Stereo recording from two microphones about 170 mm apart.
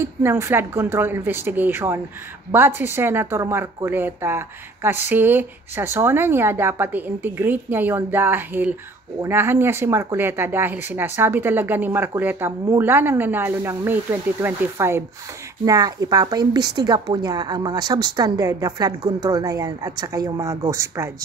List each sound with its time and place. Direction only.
0.0 s a woman's voice: 15° right (ahead or behind)